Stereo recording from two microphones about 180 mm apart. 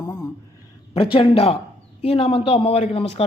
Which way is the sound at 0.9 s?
30° left (ahead or behind).